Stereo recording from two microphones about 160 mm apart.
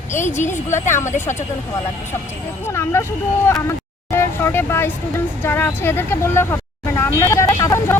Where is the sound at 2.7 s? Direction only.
15° left (ahead or behind).